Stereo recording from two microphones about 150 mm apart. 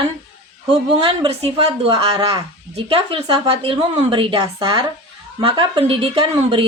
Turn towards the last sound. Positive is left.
turn(degrees=-35)  # may be behind; listen again after turning